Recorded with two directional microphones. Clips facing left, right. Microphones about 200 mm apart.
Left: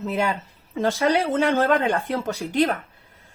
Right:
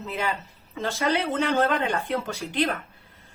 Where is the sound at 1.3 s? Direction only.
45° left (ahead or behind).